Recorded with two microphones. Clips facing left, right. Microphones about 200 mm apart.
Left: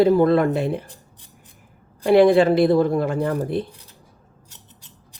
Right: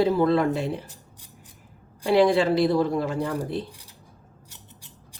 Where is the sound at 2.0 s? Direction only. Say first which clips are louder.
Left 5 dB; 55° left (ahead or behind).